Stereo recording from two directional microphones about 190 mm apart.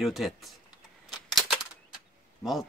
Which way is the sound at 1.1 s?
Centre (ahead or behind).